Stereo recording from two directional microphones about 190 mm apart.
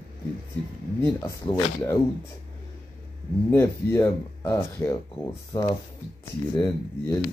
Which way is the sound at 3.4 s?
15° left (ahead or behind).